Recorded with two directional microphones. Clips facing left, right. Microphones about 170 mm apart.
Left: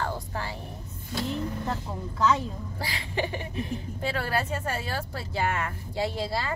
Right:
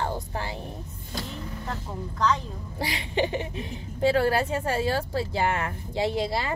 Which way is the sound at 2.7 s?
20° right (ahead or behind).